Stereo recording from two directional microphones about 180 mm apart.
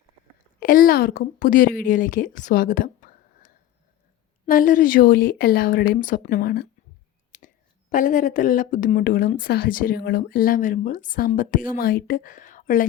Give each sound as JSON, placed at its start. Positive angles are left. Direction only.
{"t": 0.6, "sound": "speech", "side_deg": 50}
{"t": 7.3, "sound": "speech", "side_deg": 45}